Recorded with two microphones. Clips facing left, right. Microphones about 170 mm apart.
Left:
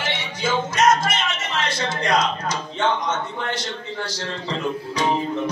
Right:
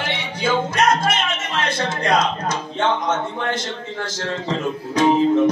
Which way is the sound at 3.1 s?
50° right (ahead or behind).